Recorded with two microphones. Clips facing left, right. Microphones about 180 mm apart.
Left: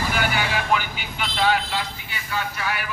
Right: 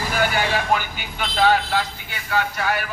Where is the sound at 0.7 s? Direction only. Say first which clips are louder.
Even; 45° right (ahead or behind).